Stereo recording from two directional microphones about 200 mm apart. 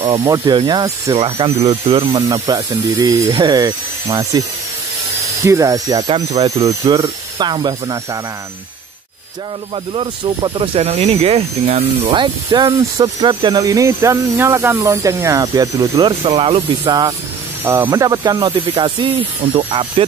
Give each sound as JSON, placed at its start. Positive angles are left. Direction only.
{"t": 0.0, "sound": "speech", "side_deg": -25}
{"t": 1.1, "sound": "speech", "side_deg": -30}
{"t": 6.4, "sound": "speech", "side_deg": -30}
{"t": 6.8, "sound": "speech", "side_deg": -20}
{"t": 9.9, "sound": "speech", "side_deg": -25}
{"t": 17.6, "sound": "speech", "side_deg": -10}